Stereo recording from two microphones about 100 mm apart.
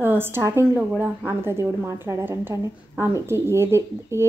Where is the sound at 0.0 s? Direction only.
20° right (ahead or behind).